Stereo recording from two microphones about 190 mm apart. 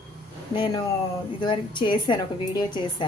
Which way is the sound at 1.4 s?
25° left (ahead or behind).